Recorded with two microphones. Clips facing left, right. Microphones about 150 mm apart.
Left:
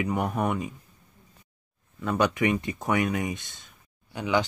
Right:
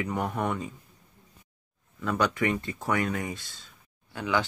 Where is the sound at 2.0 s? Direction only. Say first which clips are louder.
Left 2 dB; 20° left (ahead or behind).